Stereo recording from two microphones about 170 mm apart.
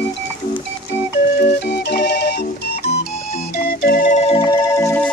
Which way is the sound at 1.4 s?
75° left (ahead or behind).